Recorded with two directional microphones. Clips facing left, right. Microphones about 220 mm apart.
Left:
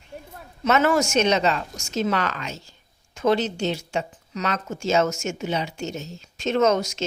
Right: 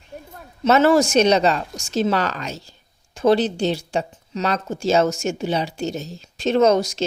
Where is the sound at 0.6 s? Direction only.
30° right (ahead or behind).